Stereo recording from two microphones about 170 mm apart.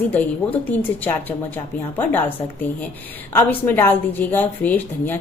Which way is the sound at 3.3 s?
10° left (ahead or behind).